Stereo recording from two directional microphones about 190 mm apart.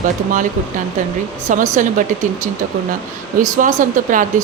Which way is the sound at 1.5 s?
40° right (ahead or behind).